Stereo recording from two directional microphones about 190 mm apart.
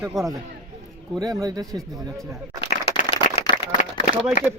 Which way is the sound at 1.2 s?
20° right (ahead or behind).